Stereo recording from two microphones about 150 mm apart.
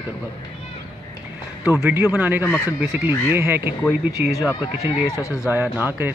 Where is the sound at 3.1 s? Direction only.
15° right (ahead or behind).